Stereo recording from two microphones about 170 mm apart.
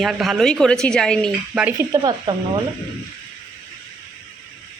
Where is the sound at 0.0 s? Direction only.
Centre (ahead or behind).